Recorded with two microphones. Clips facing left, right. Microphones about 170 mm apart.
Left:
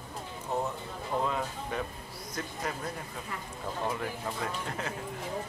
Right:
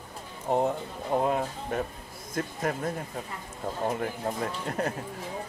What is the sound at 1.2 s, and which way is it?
Speech, 50° right (ahead or behind).